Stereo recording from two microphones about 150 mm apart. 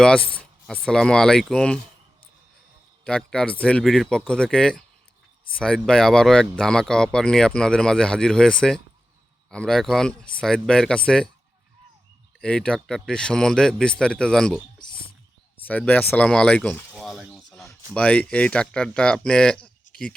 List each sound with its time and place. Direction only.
0.3 s speech: 5° left (ahead or behind)
3.0 s speech: 5° left (ahead or behind)
12.4 s speech: 5° left (ahead or behind)
14.8 s whispering: 30° left (ahead or behind)
15.6 s speech: 10° left (ahead or behind)